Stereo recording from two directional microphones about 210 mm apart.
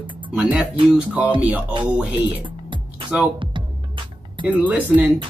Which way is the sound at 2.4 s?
25° right (ahead or behind).